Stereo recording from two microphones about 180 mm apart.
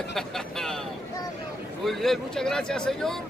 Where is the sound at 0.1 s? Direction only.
Centre (ahead or behind).